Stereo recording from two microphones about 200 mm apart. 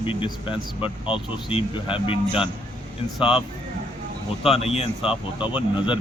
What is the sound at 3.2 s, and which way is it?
Speech, 5° right (ahead or behind).